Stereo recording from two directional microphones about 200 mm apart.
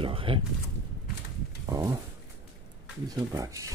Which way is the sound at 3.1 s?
15° right (ahead or behind).